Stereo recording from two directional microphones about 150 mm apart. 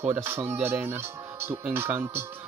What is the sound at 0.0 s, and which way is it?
Speech, 15° right (ahead or behind).